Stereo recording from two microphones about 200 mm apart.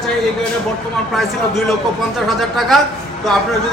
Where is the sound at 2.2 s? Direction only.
Centre (ahead or behind).